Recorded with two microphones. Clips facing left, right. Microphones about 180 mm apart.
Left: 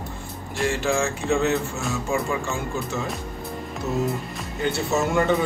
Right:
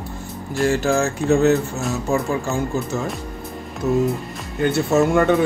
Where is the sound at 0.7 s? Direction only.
40° right (ahead or behind).